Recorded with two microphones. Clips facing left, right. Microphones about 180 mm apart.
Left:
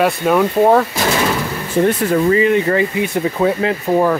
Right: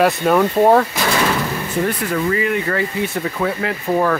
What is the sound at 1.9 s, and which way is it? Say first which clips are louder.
Speech: left 7 dB; 25° left (ahead or behind).